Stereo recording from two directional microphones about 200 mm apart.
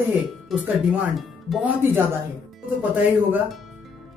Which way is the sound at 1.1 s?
5° right (ahead or behind).